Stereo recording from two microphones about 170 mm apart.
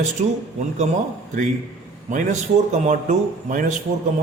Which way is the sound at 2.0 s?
45° right (ahead or behind).